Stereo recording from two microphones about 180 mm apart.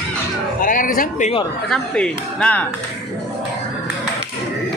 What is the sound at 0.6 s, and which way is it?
Music, 50° left (ahead or behind).